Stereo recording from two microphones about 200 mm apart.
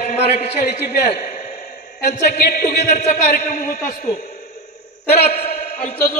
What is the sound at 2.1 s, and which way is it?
A man's voice, 50° left (ahead or behind).